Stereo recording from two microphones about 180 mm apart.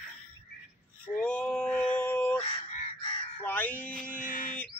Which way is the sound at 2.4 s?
30° left (ahead or behind).